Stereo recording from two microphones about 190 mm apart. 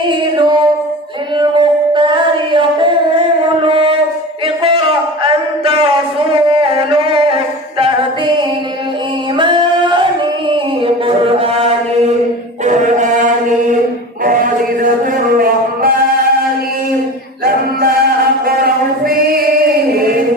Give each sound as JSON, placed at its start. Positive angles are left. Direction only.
{"t": 1.4, "sound": "singing", "side_deg": -25}
{"t": 3.6, "sound": "a sound", "side_deg": -30}
{"t": 9.4, "sound": "singing", "side_deg": -25}
{"t": 10.8, "sound": "mantra", "side_deg": -30}
{"t": 14.3, "sound": "chant", "side_deg": -45}
{"t": 17.4, "sound": "a sound", "side_deg": -50}
{"t": 18.4, "sound": "chant", "side_deg": -50}